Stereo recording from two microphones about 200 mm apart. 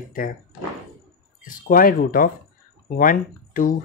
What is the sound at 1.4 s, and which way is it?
Speech, 45° left (ahead or behind).